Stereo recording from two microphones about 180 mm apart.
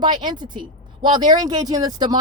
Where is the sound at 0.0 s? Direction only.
25° right (ahead or behind).